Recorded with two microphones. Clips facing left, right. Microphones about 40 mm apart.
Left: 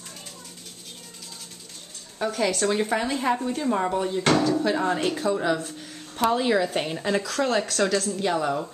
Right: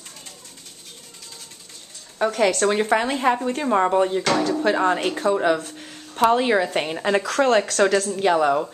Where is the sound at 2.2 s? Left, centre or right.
Right.